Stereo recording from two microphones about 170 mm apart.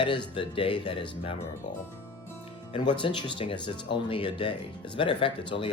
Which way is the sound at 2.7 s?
30° left (ahead or behind).